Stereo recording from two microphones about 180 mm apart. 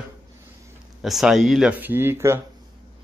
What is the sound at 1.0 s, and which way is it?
Speech, centre (ahead or behind).